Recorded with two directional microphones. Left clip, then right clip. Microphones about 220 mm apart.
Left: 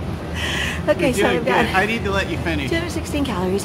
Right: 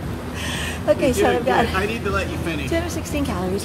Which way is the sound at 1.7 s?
35° left (ahead or behind).